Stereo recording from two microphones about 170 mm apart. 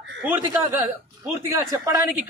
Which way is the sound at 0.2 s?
15° right (ahead or behind).